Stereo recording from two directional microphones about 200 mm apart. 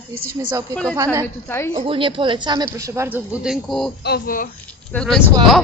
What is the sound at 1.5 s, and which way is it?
Speech, 15° left (ahead or behind).